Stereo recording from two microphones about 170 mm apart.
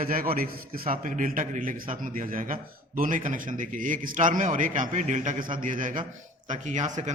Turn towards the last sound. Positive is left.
turn(degrees=-45)  # may be behind; listen again after turning